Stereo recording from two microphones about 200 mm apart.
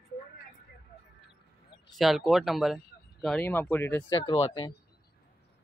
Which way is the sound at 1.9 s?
Centre (ahead or behind).